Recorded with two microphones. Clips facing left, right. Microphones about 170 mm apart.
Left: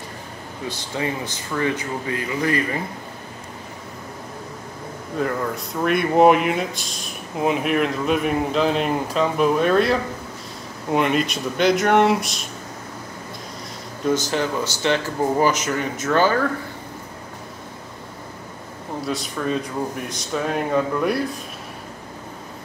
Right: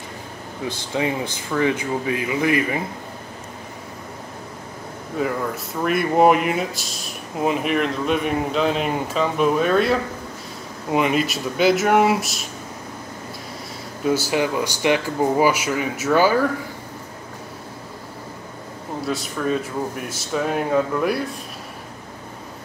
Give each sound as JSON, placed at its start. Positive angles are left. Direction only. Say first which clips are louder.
{"t": 0.9, "sound": "speech", "louder": "right 3 dB", "side_deg": -15}
{"t": 5.1, "sound": "speech", "louder": "even", "side_deg": -5}
{"t": 14.0, "sound": "speech", "louder": "right 1 dB", "side_deg": -10}
{"t": 19.0, "sound": "speech", "louder": "right 2 dB", "side_deg": 0}